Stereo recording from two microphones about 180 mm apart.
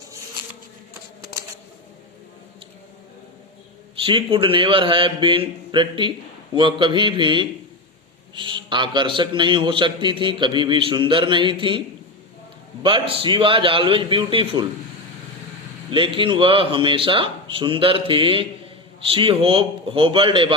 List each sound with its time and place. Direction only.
4.0 s a man's voice: 30° right (ahead or behind)
12.8 s a man's voice: 30° right (ahead or behind)
15.9 s a man's voice: 25° right (ahead or behind)